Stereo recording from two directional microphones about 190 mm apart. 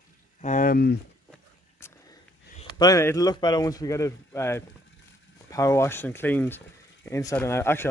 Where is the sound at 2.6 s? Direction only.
25° left (ahead or behind).